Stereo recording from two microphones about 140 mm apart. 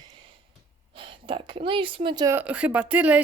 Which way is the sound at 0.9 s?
35° right (ahead or behind).